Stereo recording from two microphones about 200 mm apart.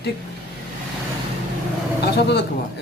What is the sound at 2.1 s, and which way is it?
Speech, 55° left (ahead or behind).